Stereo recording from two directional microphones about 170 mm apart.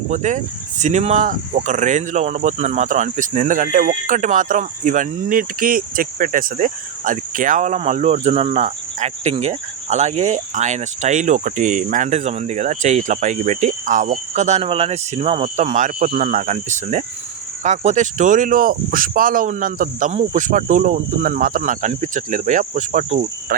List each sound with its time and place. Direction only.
0.1 s speech: 45° right (ahead or behind)
23.5 s cricket: 60° right (ahead or behind)